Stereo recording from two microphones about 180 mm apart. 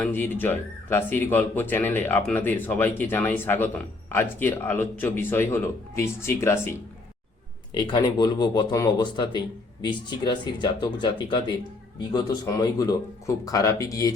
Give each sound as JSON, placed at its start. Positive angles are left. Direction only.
{"t": 0.0, "sound": "speech", "side_deg": 10}